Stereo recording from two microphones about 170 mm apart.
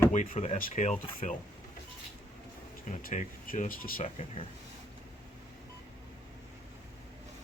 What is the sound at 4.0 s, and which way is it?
Speech, 40° left (ahead or behind).